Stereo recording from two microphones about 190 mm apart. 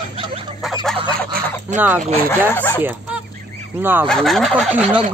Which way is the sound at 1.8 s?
10° right (ahead or behind).